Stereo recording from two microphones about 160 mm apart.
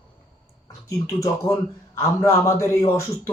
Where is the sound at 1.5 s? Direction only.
20° left (ahead or behind).